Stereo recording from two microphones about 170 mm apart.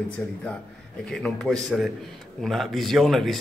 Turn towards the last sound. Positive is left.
turn(degrees=0)  # may be behind; listen again after turning